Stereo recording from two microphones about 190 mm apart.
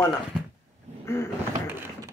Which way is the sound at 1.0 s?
15° left (ahead or behind).